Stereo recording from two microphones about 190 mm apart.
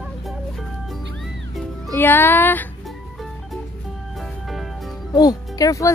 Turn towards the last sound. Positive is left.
turn(degrees=15)  # may be behind; listen again after turning